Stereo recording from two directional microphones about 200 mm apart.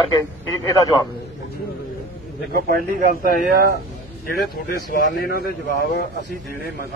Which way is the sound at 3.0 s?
45° right (ahead or behind).